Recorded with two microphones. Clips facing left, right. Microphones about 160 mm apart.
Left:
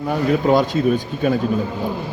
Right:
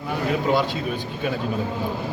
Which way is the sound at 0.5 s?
45° left (ahead or behind).